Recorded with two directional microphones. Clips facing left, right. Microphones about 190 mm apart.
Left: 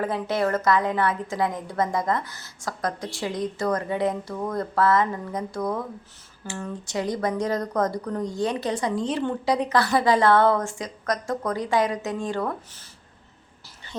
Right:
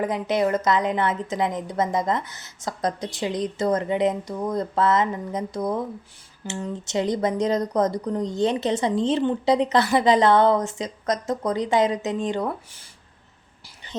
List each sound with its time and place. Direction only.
0.0 s speech: 15° right (ahead or behind)